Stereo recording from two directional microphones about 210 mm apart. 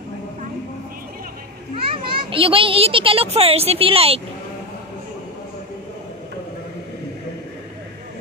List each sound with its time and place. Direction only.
2.0 s a child's voice: 25° right (ahead or behind)